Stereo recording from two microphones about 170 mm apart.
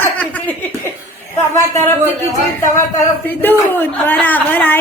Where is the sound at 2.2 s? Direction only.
15° left (ahead or behind).